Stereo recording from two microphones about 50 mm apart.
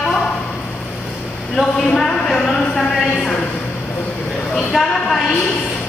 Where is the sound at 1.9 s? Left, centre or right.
Centre.